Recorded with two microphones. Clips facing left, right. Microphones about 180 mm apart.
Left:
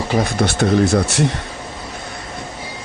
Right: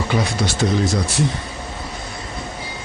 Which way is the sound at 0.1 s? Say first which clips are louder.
Left 5 dB; 50° left (ahead or behind).